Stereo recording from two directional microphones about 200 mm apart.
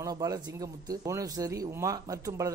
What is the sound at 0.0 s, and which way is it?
Speech, 20° right (ahead or behind).